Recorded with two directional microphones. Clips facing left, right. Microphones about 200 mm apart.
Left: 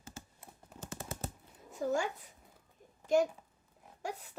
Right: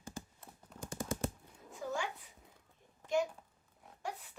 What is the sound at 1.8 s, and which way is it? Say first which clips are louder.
Speech: left 6 dB; 40° left (ahead or behind).